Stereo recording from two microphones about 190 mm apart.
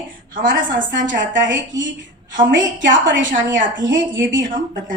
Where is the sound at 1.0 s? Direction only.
70° right (ahead or behind).